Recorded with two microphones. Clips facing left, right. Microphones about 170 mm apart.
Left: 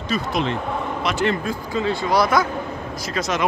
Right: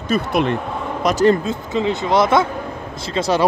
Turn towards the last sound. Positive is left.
turn(degrees=-30)  # may be behind; listen again after turning